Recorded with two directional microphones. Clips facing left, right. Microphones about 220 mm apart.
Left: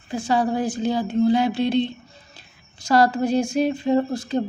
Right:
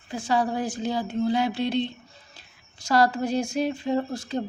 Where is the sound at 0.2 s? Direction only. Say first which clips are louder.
Left 3 dB; 20° left (ahead or behind).